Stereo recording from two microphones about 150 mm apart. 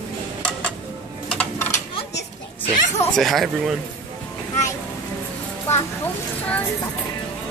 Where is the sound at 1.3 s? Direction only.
5° left (ahead or behind).